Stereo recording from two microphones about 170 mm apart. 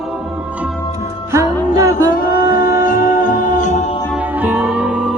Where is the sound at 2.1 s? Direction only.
60° left (ahead or behind).